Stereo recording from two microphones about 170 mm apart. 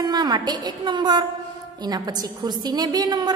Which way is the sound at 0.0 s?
25° right (ahead or behind).